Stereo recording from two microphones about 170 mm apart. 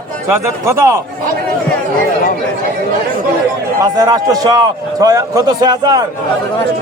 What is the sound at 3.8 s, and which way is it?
A man's voice, 25° right (ahead or behind).